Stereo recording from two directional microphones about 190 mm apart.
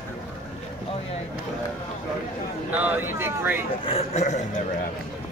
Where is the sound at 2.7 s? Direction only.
10° right (ahead or behind).